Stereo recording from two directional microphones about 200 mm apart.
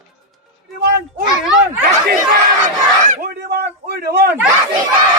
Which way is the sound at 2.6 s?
35° right (ahead or behind).